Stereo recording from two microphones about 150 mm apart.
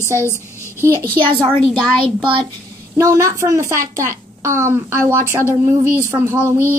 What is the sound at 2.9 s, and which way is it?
A child's voice, 20° right (ahead or behind).